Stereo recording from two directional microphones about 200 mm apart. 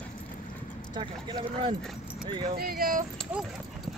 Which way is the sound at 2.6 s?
50° right (ahead or behind).